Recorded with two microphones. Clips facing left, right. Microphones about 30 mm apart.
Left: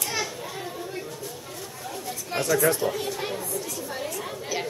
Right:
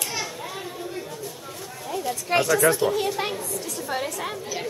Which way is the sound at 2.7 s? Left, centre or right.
Right.